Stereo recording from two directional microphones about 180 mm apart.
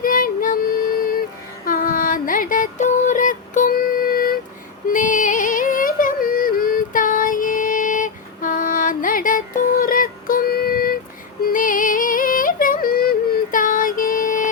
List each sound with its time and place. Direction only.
0.0 s music: 50° left (ahead or behind)
1.6 s a sound: 50° left (ahead or behind)
4.9 s yodeling: 45° left (ahead or behind)
11.4 s music: 50° left (ahead or behind)